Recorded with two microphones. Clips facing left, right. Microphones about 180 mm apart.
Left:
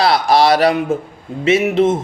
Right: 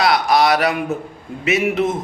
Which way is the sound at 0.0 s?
30° left (ahead or behind).